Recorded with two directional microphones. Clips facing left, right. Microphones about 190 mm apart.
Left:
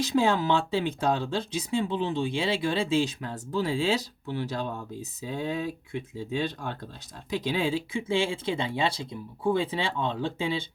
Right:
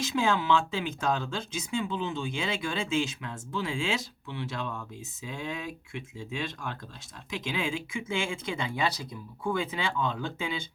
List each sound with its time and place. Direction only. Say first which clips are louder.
0.0 s speech: left 4 dB; 35° left (ahead or behind)